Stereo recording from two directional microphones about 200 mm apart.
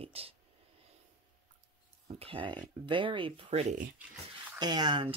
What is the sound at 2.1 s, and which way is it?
Speech, 25° right (ahead or behind).